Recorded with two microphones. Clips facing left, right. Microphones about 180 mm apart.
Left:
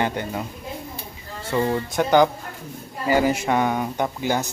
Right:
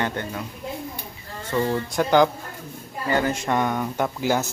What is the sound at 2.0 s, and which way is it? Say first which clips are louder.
Speech: left 1 dB; centre (ahead or behind).